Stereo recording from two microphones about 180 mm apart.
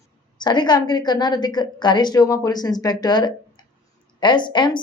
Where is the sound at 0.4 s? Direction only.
25° left (ahead or behind).